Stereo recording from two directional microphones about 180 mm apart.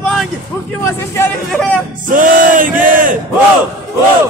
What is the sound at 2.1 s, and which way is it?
Battle cry, 50° right (ahead or behind).